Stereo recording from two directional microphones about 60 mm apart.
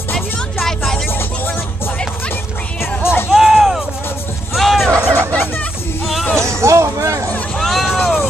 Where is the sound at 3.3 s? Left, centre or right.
Centre.